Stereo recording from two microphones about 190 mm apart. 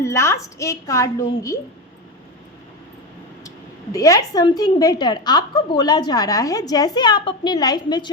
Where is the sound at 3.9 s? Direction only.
15° left (ahead or behind).